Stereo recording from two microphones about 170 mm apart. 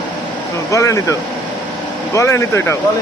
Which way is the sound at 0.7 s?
15° left (ahead or behind).